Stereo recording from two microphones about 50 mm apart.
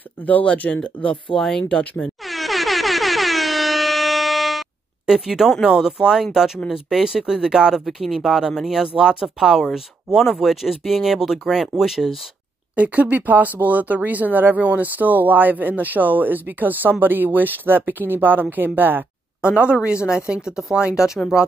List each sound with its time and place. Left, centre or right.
0.3 s speech: left
0.7 s speech: centre
2.0 s air horn: centre
5.0 s speech: centre
7.8 s speech: centre
12.7 s speech: right
19.4 s speech: right